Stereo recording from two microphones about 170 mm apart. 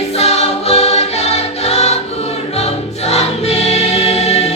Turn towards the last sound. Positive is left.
turn(degrees=40)  # may be behind; listen again after turning